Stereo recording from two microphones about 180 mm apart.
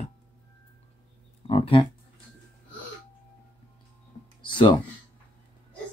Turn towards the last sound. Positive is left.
turn(degrees=25)  # may be behind; listen again after turning